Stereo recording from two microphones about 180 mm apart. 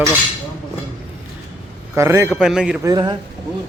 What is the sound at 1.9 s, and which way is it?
Speech, 15° right (ahead or behind).